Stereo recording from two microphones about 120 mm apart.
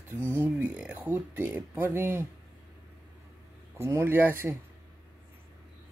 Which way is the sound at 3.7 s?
20° right (ahead or behind).